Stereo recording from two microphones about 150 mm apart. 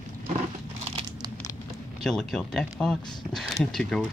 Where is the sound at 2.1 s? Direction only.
5° left (ahead or behind).